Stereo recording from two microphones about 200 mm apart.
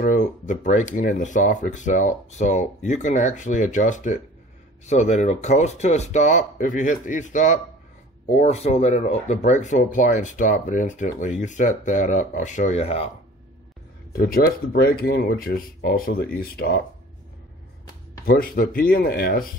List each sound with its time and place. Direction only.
0.0 s speech: 40° left (ahead or behind)
14.1 s speech: 50° left (ahead or behind)
18.2 s speech: 45° left (ahead or behind)